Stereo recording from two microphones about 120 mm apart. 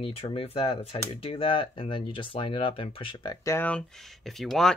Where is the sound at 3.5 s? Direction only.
15° left (ahead or behind).